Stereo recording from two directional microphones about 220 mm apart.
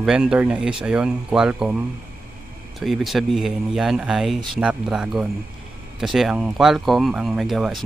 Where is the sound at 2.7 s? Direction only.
Centre (ahead or behind).